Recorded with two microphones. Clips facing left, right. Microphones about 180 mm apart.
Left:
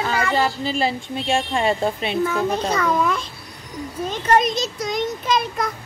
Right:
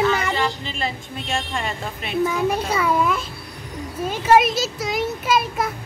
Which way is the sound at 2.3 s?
10° right (ahead or behind).